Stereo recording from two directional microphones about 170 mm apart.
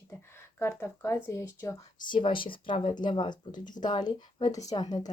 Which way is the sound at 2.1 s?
30° left (ahead or behind).